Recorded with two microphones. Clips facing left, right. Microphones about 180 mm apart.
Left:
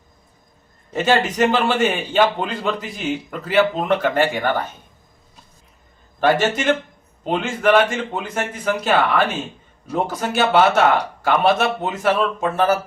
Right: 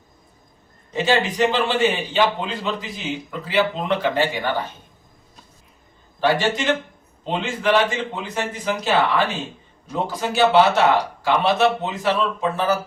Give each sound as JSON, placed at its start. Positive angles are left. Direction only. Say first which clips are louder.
{"t": 0.9, "sound": "a man's voice", "louder": "left 2 dB", "side_deg": 50}
{"t": 6.1, "sound": "a man's voice", "louder": "left 2 dB", "side_deg": 50}